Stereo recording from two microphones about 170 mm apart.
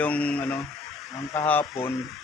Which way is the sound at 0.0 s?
5° left (ahead or behind).